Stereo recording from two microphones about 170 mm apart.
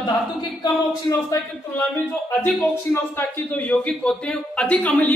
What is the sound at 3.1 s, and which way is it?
A man's voice, 10° left (ahead or behind).